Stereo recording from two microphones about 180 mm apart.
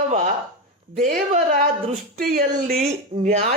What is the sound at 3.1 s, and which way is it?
Speech, 35° right (ahead or behind).